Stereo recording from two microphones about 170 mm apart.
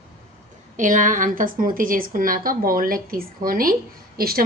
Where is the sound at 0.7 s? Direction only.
50° right (ahead or behind).